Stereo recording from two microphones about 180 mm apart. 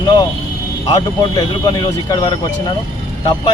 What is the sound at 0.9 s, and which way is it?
A man's voice, 25° left (ahead or behind).